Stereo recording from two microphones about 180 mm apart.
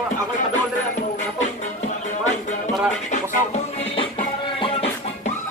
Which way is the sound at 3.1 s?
35° left (ahead or behind).